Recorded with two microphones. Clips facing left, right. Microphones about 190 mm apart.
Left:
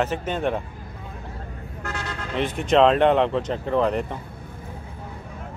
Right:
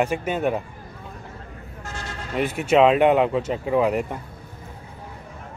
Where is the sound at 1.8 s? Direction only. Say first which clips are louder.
Left 4 dB; 60° left (ahead or behind).